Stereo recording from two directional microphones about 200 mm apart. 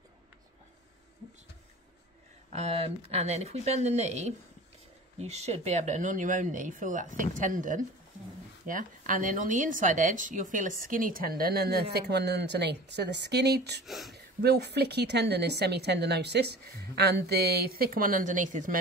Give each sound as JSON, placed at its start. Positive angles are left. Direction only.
{"t": 2.5, "sound": "a woman's voice", "side_deg": -30}
{"t": 13.8, "sound": "speech", "side_deg": 0}
{"t": 14.1, "sound": "a woman's voice", "side_deg": -55}